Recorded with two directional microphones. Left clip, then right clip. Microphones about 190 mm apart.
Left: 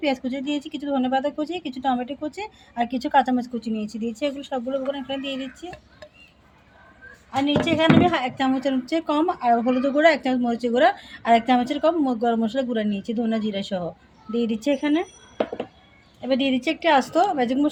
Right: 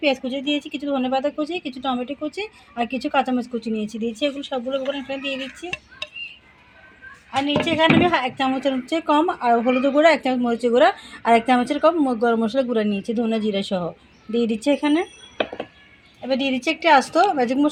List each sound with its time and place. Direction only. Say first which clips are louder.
0.0 s speech: right 3 dB; 30° right (ahead or behind)
7.3 s a woman's voice: right 1 dB; 20° right (ahead or behind)
16.2 s a woman's voice: right 1 dB; 5° right (ahead or behind)